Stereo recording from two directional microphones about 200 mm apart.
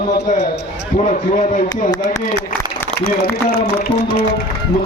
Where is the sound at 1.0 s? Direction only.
35° left (ahead or behind).